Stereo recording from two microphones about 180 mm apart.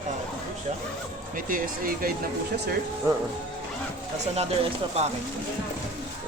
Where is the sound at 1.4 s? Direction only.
50° right (ahead or behind).